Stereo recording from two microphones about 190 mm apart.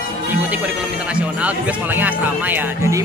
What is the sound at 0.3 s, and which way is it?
Speech, 5° right (ahead or behind).